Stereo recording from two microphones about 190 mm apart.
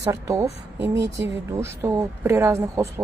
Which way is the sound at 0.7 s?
70° right (ahead or behind).